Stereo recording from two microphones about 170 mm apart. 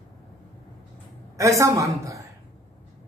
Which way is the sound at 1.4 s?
15° right (ahead or behind).